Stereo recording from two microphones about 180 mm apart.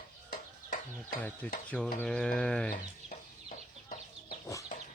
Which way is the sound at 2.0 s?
5° left (ahead or behind).